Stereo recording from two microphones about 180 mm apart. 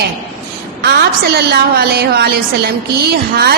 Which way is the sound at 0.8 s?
60° right (ahead or behind).